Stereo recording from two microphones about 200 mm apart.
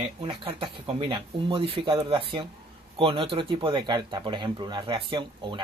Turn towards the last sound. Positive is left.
turn(degrees=-25)  # may be behind; listen again after turning